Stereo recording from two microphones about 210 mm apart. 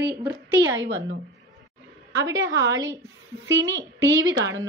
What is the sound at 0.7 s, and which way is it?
Speech, 60° right (ahead or behind).